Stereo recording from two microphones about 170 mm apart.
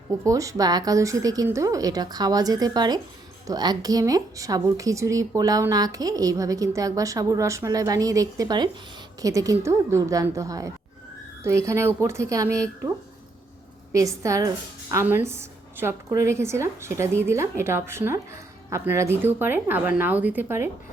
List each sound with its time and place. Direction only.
0.3 s a woman's voice: 20° right (ahead or behind)
13.9 s a woman's voice: 20° right (ahead or behind)